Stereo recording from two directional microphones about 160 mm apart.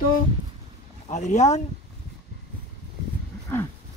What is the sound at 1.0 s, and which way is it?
Speech, 45° left (ahead or behind).